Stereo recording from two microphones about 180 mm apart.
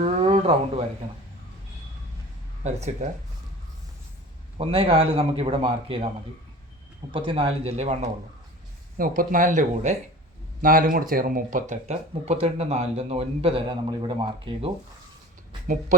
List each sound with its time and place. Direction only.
0.0 s a sound: 35° right (ahead or behind)
2.6 s speech: 40° right (ahead or behind)
4.5 s speech: 30° right (ahead or behind)
7.1 s speech: 30° right (ahead or behind)
9.0 s speech: 50° right (ahead or behind); by 14.7 s 25° right (ahead or behind)
15.6 s speech: 45° right (ahead or behind)